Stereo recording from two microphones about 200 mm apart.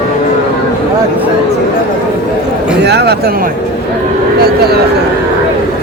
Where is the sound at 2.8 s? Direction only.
55° right (ahead or behind).